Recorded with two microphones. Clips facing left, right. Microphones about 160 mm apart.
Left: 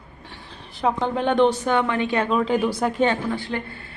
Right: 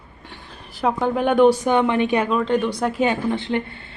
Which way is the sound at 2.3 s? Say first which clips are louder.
Right 1 dB; 5° left (ahead or behind).